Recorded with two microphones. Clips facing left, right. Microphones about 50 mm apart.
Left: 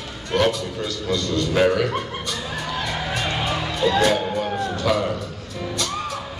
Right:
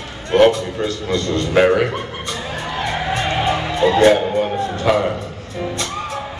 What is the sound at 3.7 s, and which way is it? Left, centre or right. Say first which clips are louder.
Speech: right 6 dB; right.